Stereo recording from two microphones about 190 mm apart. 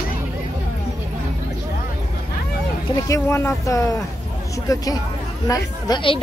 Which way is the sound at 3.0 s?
15° left (ahead or behind).